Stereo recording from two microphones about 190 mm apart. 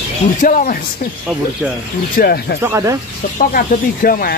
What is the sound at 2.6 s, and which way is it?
Speech, 15° right (ahead or behind).